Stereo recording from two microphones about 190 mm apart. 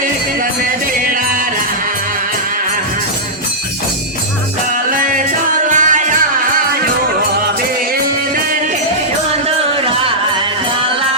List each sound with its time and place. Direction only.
4.9 s music: 45° right (ahead or behind)